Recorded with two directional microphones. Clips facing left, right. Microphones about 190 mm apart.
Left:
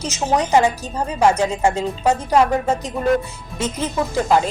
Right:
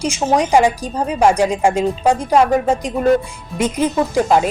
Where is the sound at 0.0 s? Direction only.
10° right (ahead or behind).